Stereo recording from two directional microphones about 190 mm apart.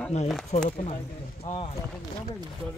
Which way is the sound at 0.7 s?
30° left (ahead or behind).